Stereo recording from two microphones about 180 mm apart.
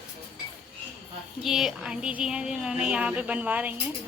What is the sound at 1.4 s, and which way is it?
Speech, centre (ahead or behind).